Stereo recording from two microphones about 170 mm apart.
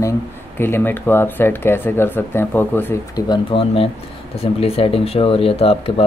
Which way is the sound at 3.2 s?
30° left (ahead or behind).